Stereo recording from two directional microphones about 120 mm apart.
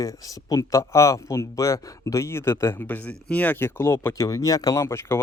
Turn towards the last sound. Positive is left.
turn(degrees=20)  # may be behind; listen again after turning